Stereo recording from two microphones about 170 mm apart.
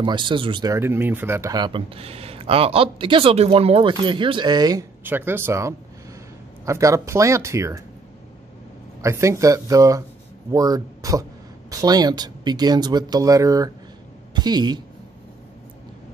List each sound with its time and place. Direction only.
0.0 s speech: 30° right (ahead or behind)
0.7 s speech: 15° right (ahead or behind)
5.0 s speech: 10° right (ahead or behind)
9.0 s speech: 15° right (ahead or behind)